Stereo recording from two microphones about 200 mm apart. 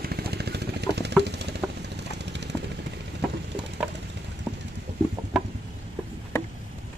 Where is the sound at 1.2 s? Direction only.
55° right (ahead or behind).